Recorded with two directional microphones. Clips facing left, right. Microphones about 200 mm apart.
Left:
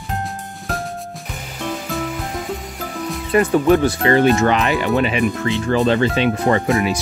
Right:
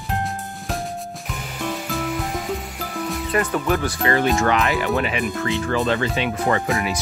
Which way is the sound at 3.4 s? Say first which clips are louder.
Left 8 dB; 25° left (ahead or behind).